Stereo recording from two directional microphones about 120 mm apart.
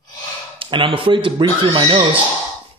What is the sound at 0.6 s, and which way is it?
Speech, 45° right (ahead or behind).